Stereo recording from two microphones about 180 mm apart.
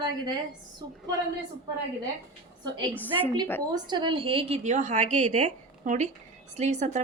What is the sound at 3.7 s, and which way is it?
A woman's voice, 25° right (ahead or behind).